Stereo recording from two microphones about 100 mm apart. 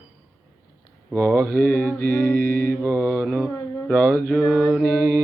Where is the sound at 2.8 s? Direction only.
25° right (ahead or behind).